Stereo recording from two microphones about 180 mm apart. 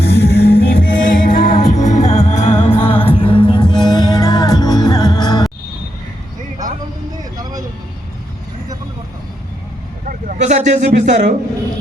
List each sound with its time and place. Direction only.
0.0 s music: 65° left (ahead or behind); by 5.5 s 20° left (ahead or behind)
10.1 s speech: 45° right (ahead or behind)